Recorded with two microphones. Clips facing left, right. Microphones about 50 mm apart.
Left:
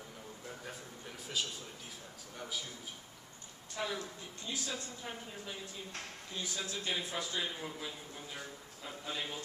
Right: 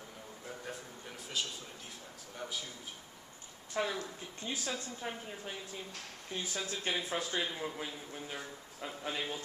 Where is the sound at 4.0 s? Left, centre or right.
Right.